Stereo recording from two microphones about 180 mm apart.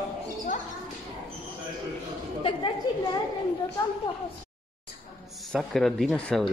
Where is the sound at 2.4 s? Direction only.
25° left (ahead or behind).